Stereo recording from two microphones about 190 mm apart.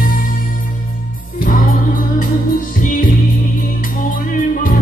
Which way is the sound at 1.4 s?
45° left (ahead or behind).